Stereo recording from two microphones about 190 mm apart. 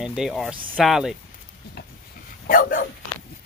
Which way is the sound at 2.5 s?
45° left (ahead or behind).